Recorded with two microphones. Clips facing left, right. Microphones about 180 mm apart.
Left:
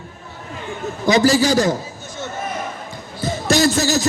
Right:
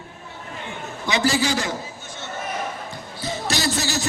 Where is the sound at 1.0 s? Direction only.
40° left (ahead or behind).